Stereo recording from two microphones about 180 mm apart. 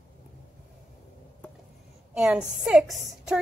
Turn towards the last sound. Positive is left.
turn(degrees=0)  # may be behind; listen again after turning